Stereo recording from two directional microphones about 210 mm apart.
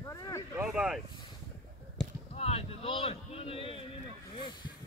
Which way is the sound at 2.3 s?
30° left (ahead or behind).